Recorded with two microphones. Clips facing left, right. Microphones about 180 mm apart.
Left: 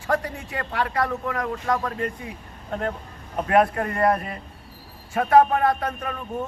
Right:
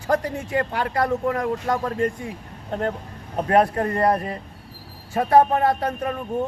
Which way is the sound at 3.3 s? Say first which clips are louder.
Right 1 dB; 35° right (ahead or behind).